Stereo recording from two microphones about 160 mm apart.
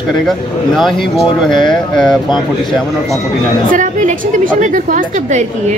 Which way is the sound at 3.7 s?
55° right (ahead or behind).